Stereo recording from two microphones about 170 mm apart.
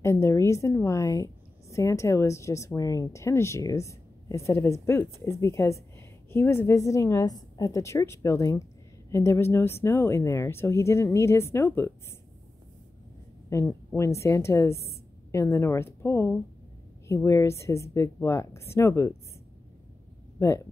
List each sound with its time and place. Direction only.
0.0 s a woman's voice: 15° left (ahead or behind)
13.5 s a woman's voice: 15° left (ahead or behind)
20.3 s speech: 15° left (ahead or behind)